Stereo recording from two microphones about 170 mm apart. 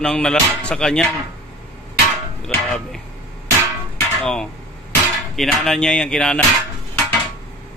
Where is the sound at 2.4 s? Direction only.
5° left (ahead or behind).